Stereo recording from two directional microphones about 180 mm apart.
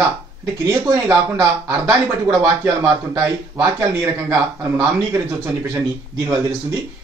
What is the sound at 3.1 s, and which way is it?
Speech, 15° right (ahead or behind).